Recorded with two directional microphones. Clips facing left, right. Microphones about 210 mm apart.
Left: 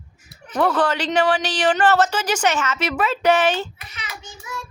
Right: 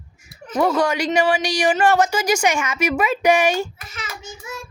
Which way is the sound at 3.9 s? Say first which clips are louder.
Right 4 dB; 45° right (ahead or behind).